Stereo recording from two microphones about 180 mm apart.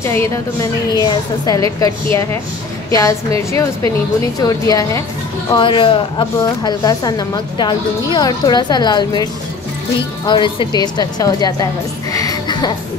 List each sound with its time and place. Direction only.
0.2 s a woman's voice: 20° left (ahead or behind)
12.1 s music: 20° left (ahead or behind)